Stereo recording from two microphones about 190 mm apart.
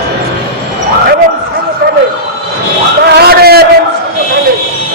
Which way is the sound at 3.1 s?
55° right (ahead or behind).